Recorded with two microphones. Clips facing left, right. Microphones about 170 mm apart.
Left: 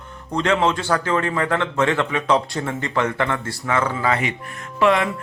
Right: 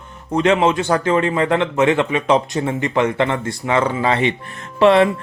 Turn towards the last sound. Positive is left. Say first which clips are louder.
# right 6 dB
turn(degrees=-30)  # may be behind; listen again after turning